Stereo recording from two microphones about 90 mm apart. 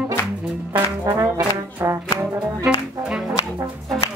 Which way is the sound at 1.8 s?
30° right (ahead or behind).